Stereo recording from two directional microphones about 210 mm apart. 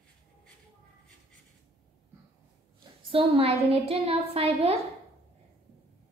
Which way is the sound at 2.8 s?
25° right (ahead or behind).